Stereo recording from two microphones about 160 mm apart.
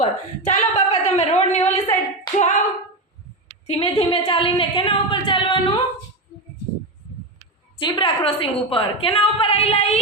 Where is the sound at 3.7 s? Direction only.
35° left (ahead or behind).